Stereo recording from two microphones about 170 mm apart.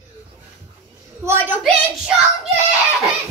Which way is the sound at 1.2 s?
10° right (ahead or behind).